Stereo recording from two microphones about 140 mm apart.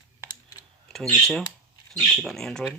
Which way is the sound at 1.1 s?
Centre (ahead or behind).